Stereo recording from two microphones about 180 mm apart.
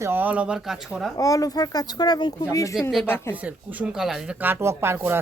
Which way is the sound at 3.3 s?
10° right (ahead or behind).